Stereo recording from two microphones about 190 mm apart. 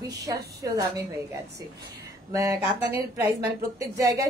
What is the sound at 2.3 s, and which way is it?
A woman's voice, 15° right (ahead or behind).